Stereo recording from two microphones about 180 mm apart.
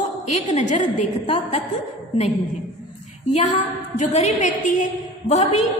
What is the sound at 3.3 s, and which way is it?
A woman's voice, 40° left (ahead or behind).